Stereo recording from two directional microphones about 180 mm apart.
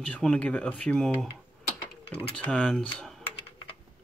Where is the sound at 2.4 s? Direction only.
5° left (ahead or behind).